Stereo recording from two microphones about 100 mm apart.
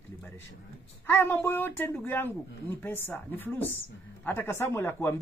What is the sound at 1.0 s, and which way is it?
Speech, 20° left (ahead or behind).